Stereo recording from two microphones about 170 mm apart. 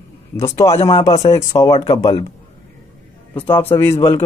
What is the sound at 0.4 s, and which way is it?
Speech, 15° left (ahead or behind).